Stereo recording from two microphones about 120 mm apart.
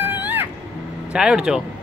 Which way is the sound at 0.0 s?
15° right (ahead or behind).